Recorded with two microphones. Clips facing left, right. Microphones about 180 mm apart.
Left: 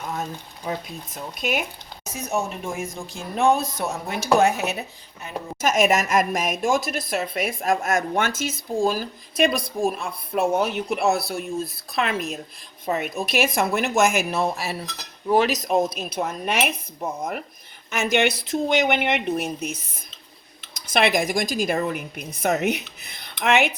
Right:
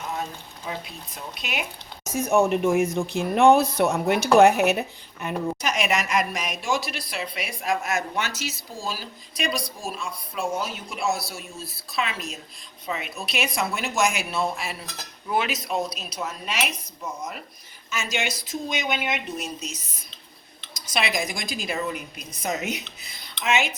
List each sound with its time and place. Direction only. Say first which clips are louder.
0.9 s a woman's voice: left 4 dB; 50° left (ahead or behind)
2.1 s speech: right 7 dB; 55° right (ahead or behind)
5.5 s a woman's voice: left 6 dB; 45° left (ahead or behind)
15.9 s a woman's voice: left 5 dB; 55° left (ahead or behind)